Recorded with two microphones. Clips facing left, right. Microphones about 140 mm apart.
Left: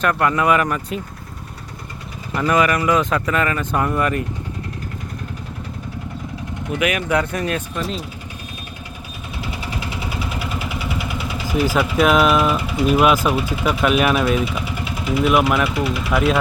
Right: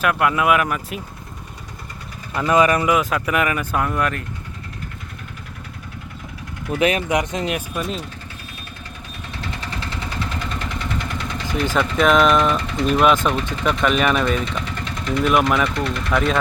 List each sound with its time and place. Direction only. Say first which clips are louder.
0.0 s speech: left 1 dB; 5° right (ahead or behind)
2.5 s speech: right 1 dB; 25° right (ahead or behind)
2.9 s speech: left 1 dB; 5° right (ahead or behind)
3.8 s speech: left 3 dB; 5° left (ahead or behind)
6.7 s speech: right 2 dB; 30° right (ahead or behind)
7.1 s speech: left 1 dB; 15° right (ahead or behind)
7.7 s speech: even; centre (ahead or behind)
9.4 s vehicle: left 2 dB; 10° left (ahead or behind)